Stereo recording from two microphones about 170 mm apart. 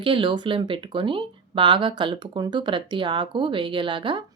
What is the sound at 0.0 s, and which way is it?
A woman's voice, 30° right (ahead or behind).